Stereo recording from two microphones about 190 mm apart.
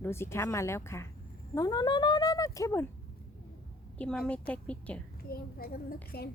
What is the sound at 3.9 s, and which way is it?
Speech, 5° left (ahead or behind).